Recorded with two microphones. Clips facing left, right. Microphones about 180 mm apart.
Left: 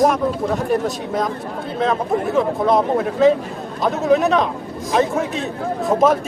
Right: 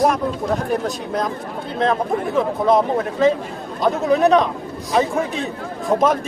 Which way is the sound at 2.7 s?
Centre (ahead or behind).